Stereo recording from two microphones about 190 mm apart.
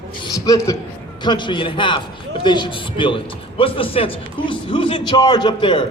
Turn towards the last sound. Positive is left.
turn(degrees=25)  # may be behind; listen again after turning